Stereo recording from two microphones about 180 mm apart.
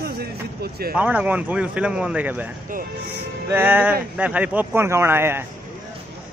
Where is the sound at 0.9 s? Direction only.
10° right (ahead or behind).